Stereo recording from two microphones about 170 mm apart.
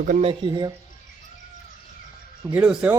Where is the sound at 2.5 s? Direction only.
5° right (ahead or behind).